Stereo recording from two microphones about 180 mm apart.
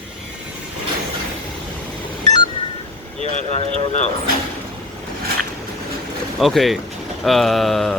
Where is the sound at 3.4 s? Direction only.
35° left (ahead or behind).